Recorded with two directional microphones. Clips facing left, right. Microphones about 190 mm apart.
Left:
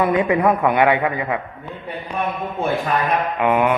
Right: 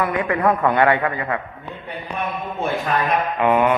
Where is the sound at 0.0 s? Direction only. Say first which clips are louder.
Left 3 dB; 20° left (ahead or behind).